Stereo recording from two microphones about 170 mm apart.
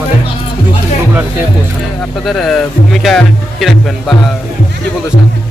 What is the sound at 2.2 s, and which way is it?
Speech, centre (ahead or behind).